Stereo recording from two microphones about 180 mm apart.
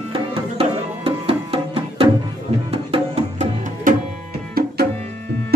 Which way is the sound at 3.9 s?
50° right (ahead or behind).